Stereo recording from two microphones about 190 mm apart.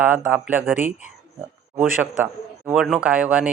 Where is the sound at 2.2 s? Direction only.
10° right (ahead or behind).